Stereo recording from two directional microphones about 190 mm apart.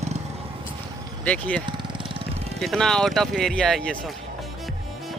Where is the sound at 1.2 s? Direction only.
5° left (ahead or behind).